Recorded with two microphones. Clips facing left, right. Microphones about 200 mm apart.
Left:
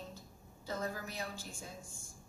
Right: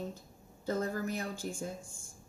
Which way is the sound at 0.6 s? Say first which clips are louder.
Right 7 dB; 50° right (ahead or behind).